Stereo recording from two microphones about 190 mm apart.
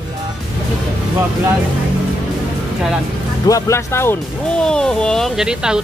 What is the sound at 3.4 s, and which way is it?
Speech, 15° left (ahead or behind).